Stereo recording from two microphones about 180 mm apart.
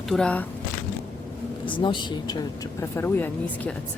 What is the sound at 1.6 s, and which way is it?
Speech, 25° left (ahead or behind).